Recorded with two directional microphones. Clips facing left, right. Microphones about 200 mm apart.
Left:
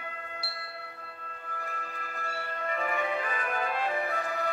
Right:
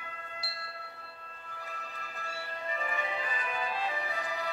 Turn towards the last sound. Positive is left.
turn(degrees=55)  # may be behind; listen again after turning